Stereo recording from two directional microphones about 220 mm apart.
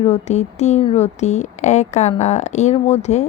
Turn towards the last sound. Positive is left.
turn(degrees=30)  # may be behind; listen again after turning